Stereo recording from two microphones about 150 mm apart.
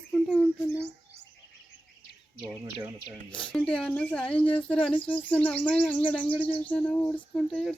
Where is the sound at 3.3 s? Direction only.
35° left (ahead or behind).